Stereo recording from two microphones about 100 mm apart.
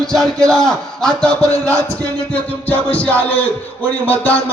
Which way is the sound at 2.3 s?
15° left (ahead or behind).